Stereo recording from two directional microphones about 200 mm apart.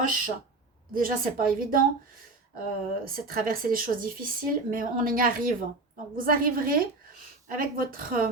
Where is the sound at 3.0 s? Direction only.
45° right (ahead or behind).